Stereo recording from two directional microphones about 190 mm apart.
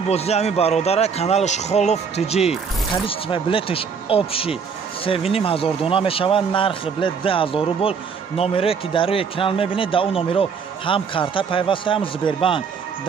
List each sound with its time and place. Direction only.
0.1 s a man's voice: 35° left (ahead or behind)